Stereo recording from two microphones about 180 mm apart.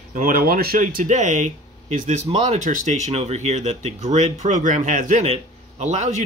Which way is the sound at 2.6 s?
45° right (ahead or behind).